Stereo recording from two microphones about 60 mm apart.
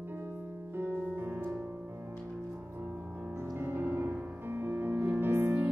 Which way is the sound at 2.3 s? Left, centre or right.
Right.